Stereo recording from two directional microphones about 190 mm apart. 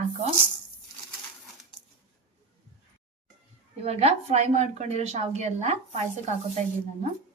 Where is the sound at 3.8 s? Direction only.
35° right (ahead or behind).